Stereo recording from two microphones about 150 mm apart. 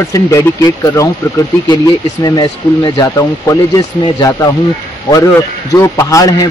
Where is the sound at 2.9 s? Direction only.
20° left (ahead or behind).